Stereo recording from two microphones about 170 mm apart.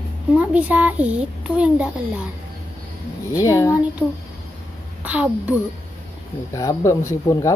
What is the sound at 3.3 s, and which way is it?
Speech, 20° left (ahead or behind).